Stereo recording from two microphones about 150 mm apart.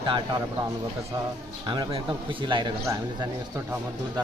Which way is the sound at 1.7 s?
35° right (ahead or behind).